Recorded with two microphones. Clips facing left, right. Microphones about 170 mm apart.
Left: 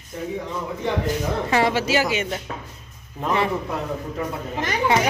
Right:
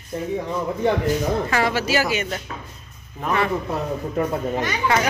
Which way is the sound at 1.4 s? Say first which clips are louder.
Left 1 dB; 25° left (ahead or behind).